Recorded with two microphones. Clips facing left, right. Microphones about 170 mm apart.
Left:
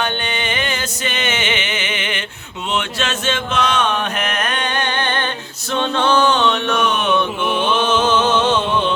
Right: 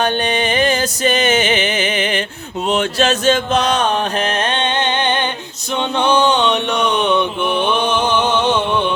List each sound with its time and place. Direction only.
0.0 s music: 40° right (ahead or behind)
2.6 s mantra: 40° right (ahead or behind); by 8.5 s 15° right (ahead or behind)